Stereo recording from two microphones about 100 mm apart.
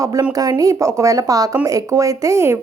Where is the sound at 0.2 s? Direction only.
40° right (ahead or behind).